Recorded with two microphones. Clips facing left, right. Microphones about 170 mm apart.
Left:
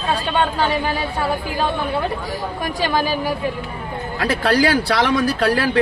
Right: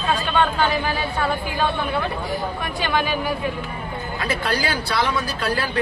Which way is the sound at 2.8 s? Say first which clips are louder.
Left 2 dB; 35° left (ahead or behind).